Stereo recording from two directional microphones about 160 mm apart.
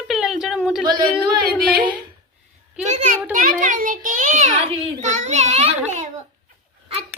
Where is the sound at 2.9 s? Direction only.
45° right (ahead or behind).